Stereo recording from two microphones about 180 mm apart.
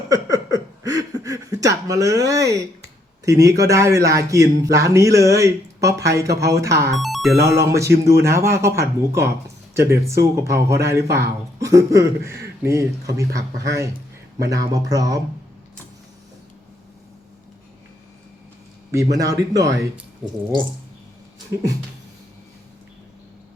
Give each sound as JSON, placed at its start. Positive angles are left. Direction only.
{"t": 0.1, "sound": "a sound", "side_deg": -20}
{"t": 3.2, "sound": "speech", "side_deg": -20}
{"t": 7.0, "sound": "speech", "side_deg": 0}
{"t": 7.5, "sound": "speech", "side_deg": -15}
{"t": 14.5, "sound": "speech", "side_deg": -20}
{"t": 19.1, "sound": "speech", "side_deg": -20}
{"t": 20.2, "sound": "speech", "side_deg": 0}
{"t": 21.5, "sound": "speech", "side_deg": -15}